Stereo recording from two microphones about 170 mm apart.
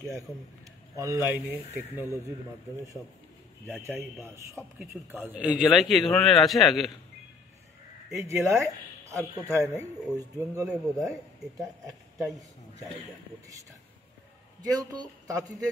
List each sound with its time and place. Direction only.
0.9 s speech: 20° right (ahead or behind)
3.7 s a man's voice: 15° right (ahead or behind)
8.2 s a man's voice: 15° right (ahead or behind)
12.2 s a man's voice: centre (ahead or behind)
14.6 s a man's voice: 20° right (ahead or behind)